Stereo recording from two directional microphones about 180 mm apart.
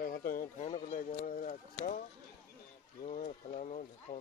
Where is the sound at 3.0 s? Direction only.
40° left (ahead or behind).